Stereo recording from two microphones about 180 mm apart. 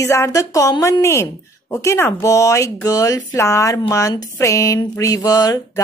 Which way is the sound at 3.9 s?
20° left (ahead or behind).